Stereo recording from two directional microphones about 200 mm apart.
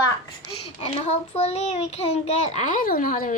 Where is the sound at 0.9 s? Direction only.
30° left (ahead or behind).